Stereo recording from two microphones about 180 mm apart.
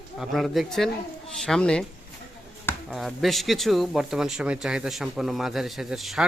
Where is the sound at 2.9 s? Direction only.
Centre (ahead or behind).